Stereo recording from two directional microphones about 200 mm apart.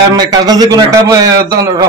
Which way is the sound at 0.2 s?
20° right (ahead or behind).